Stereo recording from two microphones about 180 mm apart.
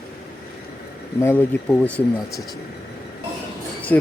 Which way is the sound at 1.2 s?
10° left (ahead or behind).